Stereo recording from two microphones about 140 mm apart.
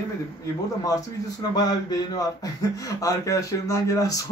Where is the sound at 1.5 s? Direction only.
25° left (ahead or behind).